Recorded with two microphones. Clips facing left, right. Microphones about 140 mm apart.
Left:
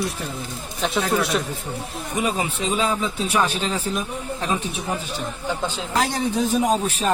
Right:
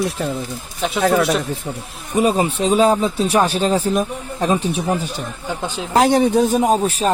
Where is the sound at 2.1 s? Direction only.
35° right (ahead or behind).